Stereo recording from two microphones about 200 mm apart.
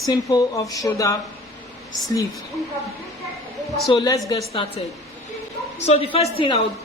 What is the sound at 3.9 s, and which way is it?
Speech, 15° left (ahead or behind).